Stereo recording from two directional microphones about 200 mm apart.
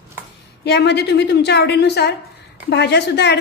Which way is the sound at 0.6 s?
55° left (ahead or behind).